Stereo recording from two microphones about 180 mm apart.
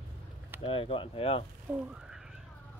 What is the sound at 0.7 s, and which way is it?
Speech, 30° left (ahead or behind).